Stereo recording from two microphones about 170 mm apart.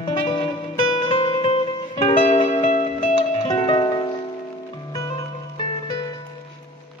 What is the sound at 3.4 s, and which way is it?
Music, 25° left (ahead or behind).